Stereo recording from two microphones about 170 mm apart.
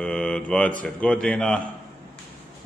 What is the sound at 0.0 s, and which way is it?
Mantra, 5° left (ahead or behind).